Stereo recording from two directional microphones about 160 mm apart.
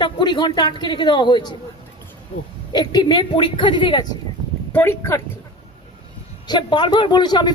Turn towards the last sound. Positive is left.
turn(degrees=25)  # may be behind; listen again after turning